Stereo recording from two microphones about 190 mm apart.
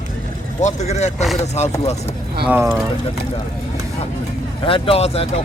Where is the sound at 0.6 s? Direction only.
35° left (ahead or behind).